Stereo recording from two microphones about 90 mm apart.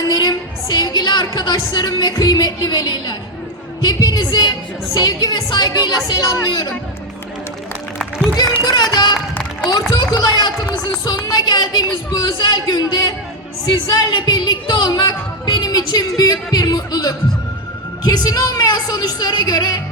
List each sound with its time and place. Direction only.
0.1 s a sound: 50° left (ahead or behind)
1.4 s speech: 55° left (ahead or behind)
8.4 s speech: 50° left (ahead or behind)